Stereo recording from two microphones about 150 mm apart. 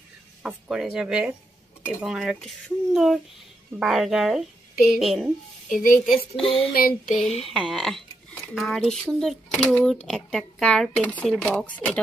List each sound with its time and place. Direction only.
0.4 s a child's voice: 5° right (ahead or behind)
6.4 s speech: 40° left (ahead or behind)
7.1 s a child's voice: centre (ahead or behind)